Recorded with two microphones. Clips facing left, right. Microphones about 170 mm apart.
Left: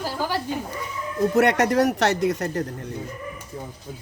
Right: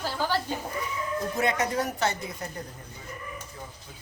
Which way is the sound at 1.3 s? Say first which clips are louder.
Left 9 dB; 70° left (ahead or behind).